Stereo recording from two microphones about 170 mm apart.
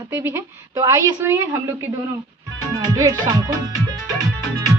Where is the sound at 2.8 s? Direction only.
20° right (ahead or behind).